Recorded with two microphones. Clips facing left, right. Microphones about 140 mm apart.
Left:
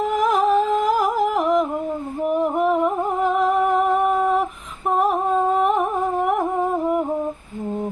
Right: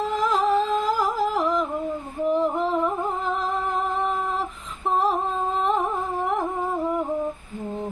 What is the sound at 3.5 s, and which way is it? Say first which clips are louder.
Humming: left 8 dB; 15° left (ahead or behind).